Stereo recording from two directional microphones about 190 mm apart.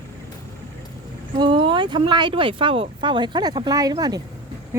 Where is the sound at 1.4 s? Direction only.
25° right (ahead or behind).